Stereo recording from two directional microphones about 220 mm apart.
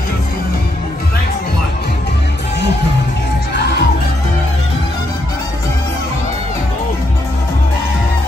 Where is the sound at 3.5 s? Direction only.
50° left (ahead or behind).